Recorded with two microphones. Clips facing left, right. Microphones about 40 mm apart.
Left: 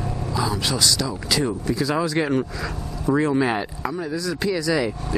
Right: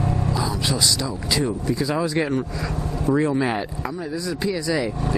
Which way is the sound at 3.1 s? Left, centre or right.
Left.